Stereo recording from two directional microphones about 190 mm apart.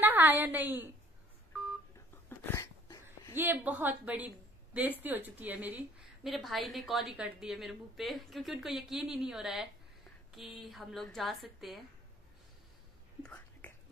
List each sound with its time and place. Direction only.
0.0 s a woman's voice: 10° right (ahead or behind)
2.2 s a sound: 15° left (ahead or behind)
3.3 s a woman's voice: 10° right (ahead or behind)
13.2 s whispering: 10° left (ahead or behind)